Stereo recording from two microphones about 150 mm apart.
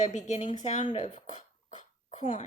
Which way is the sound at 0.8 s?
45° left (ahead or behind).